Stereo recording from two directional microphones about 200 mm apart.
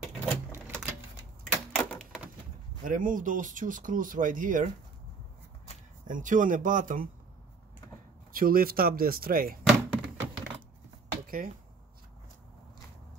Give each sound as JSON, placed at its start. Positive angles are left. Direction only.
{"t": 0.5, "sound": "typewriter", "side_deg": -10}
{"t": 1.4, "sound": "typewriter", "side_deg": 5}
{"t": 2.8, "sound": "speech", "side_deg": -40}
{"t": 6.0, "sound": "speech", "side_deg": -40}
{"t": 8.3, "sound": "speech", "side_deg": -45}
{"t": 9.7, "sound": "thunk", "side_deg": -5}
{"t": 11.2, "sound": "speech", "side_deg": -45}